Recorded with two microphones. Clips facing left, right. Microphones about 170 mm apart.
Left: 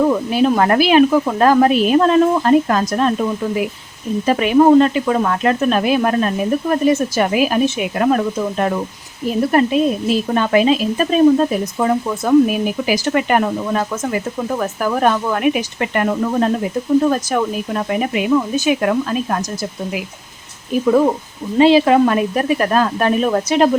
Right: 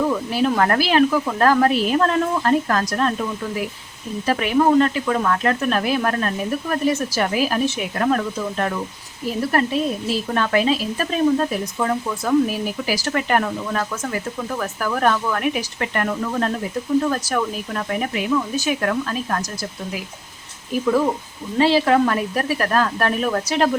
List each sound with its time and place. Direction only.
0.1 s a woman's voice: 20° left (ahead or behind)
20.7 s a woman's voice: 25° left (ahead or behind)